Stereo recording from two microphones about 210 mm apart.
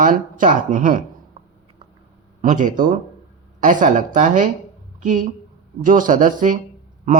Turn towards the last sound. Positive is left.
turn(degrees=-40)  # may be behind; listen again after turning